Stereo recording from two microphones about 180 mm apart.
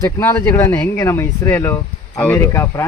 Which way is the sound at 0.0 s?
15° left (ahead or behind).